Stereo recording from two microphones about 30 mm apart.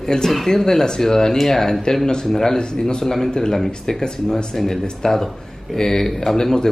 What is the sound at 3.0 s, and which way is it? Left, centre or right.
Speech, centre.